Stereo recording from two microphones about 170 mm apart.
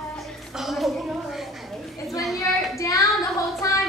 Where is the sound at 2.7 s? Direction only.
20° left (ahead or behind).